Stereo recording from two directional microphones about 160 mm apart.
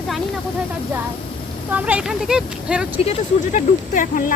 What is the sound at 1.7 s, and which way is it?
Speech, 10° right (ahead or behind).